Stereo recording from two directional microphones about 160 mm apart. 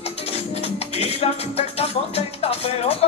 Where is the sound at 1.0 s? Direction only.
40° left (ahead or behind).